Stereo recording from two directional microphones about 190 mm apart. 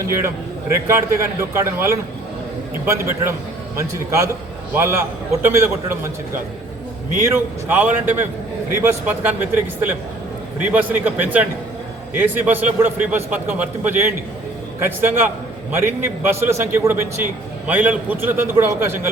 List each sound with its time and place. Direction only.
0.0 s a man's voice: 15° right (ahead or behind)
7.3 s a man's voice: 10° right (ahead or behind)